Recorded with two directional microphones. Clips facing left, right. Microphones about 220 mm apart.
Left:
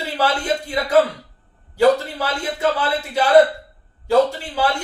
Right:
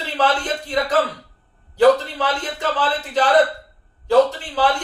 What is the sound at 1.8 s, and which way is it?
Speech, 10° left (ahead or behind).